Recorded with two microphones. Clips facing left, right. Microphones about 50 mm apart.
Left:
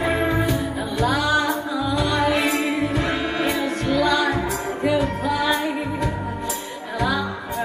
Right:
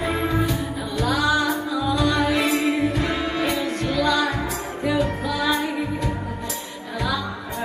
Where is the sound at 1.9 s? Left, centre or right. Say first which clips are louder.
Left 1 dB; left.